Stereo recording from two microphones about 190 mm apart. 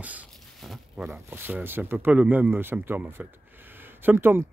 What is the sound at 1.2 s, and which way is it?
Speech, 10° right (ahead or behind).